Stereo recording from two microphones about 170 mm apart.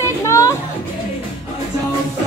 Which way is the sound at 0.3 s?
20° left (ahead or behind).